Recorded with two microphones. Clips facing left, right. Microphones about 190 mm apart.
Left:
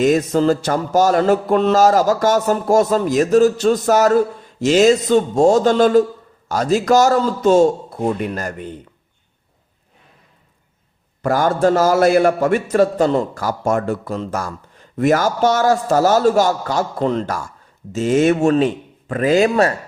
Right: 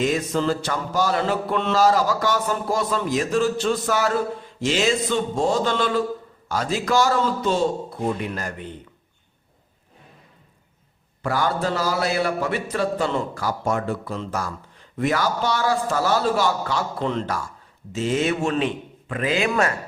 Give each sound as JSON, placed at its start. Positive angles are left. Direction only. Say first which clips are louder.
{"t": 0.0, "sound": "mantra", "louder": "left 7 dB", "side_deg": 45}
{"t": 11.2, "sound": "mantra", "louder": "left 7 dB", "side_deg": 45}